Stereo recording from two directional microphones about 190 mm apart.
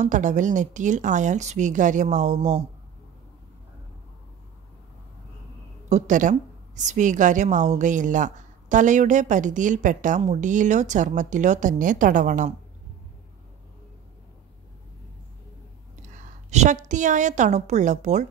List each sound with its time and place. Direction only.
0.0 s a woman's voice: 40° right (ahead or behind)
5.9 s a woman's voice: 40° right (ahead or behind)
16.0 s a woman's voice: 40° right (ahead or behind)